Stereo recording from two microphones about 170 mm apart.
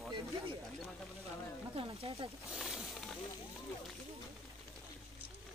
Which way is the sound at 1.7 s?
30° right (ahead or behind).